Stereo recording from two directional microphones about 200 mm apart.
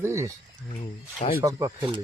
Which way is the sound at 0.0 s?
15° right (ahead or behind).